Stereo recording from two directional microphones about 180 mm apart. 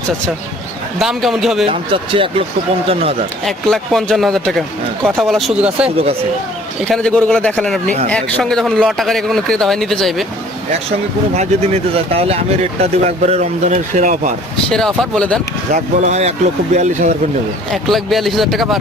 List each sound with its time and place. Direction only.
0.9 s a man's voice: centre (ahead or behind)
1.6 s speech: 30° right (ahead or behind)
3.4 s a man's voice: centre (ahead or behind)
11.3 s speech: 35° right (ahead or behind)
14.7 s a man's voice: 5° left (ahead or behind)
15.7 s speech: 40° right (ahead or behind)
17.7 s a man's voice: centre (ahead or behind)